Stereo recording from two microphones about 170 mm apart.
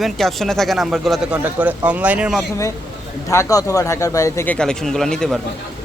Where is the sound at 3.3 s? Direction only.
20° left (ahead or behind).